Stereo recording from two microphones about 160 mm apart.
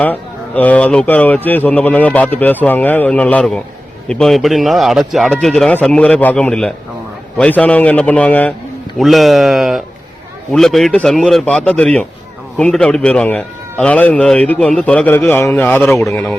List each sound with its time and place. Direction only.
0.0 s a man's voice: 10° left (ahead or behind)